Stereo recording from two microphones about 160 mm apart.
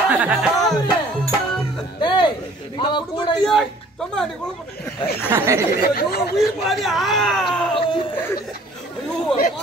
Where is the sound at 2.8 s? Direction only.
30° left (ahead or behind).